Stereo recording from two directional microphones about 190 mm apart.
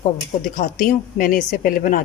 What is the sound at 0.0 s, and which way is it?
Speech, 45° left (ahead or behind).